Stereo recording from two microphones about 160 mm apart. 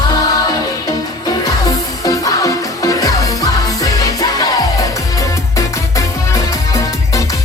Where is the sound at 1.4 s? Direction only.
25° left (ahead or behind).